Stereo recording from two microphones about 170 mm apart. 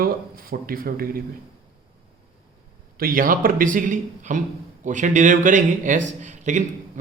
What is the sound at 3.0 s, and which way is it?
A man's voice, 55° right (ahead or behind).